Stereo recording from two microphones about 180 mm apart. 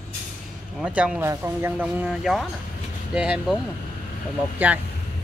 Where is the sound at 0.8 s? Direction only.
5° right (ahead or behind).